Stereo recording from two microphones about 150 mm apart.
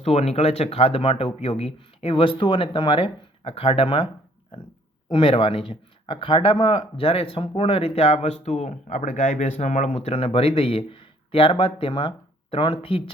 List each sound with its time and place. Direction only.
0.0 s speech: 45° left (ahead or behind)